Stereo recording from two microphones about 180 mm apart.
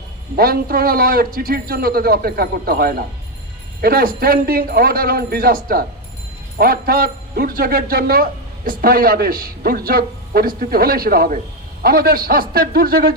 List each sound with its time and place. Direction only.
0.3 s a man's voice: 55° right (ahead or behind)